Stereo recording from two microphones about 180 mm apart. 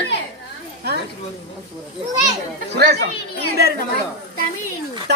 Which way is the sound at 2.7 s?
70° right (ahead or behind).